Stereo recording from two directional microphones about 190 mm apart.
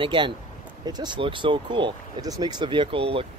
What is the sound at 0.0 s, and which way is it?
Speech, 25° right (ahead or behind).